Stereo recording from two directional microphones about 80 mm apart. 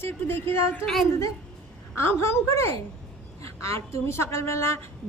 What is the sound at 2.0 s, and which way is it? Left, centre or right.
A woman's voice, left.